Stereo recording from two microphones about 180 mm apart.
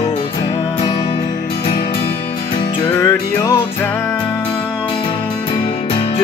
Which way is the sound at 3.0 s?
15° left (ahead or behind).